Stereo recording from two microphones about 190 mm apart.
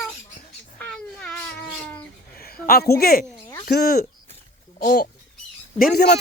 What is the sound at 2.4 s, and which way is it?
A man's voice, 50° left (ahead or behind).